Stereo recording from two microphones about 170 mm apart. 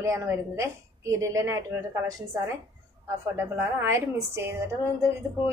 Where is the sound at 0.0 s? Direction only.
15° right (ahead or behind).